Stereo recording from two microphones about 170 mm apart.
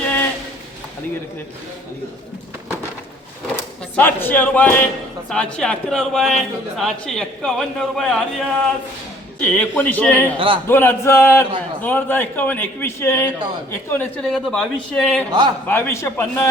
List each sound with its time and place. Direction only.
0.0 s a sound: 10° left (ahead or behind)
3.5 s speech: 10° left (ahead or behind)
9.4 s a man's voice: 10° left (ahead or behind)
10.3 s a man's voice: 30° right (ahead or behind)
10.7 s a man's voice: 15° left (ahead or behind)
14.0 s speech: centre (ahead or behind)
15.3 s a man's voice: 25° right (ahead or behind)
15.6 s a man's voice: 15° left (ahead or behind)